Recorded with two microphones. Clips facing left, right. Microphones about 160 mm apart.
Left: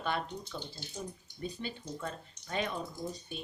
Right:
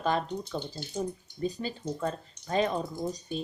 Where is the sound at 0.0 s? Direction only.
40° right (ahead or behind).